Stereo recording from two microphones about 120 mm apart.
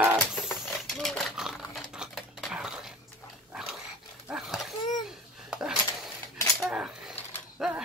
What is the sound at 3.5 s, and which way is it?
Dog, 5° right (ahead or behind).